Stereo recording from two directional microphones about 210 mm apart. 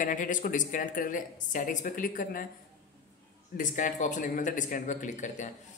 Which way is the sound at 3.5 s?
40° left (ahead or behind).